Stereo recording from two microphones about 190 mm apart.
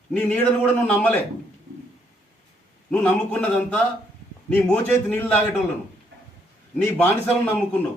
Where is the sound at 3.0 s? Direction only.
10° left (ahead or behind).